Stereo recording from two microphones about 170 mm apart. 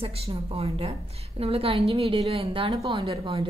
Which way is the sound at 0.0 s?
35° right (ahead or behind).